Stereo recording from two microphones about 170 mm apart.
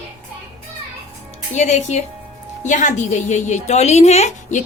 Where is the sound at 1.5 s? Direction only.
45° left (ahead or behind).